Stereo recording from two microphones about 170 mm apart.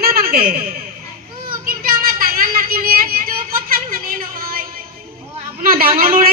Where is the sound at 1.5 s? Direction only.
60° right (ahead or behind).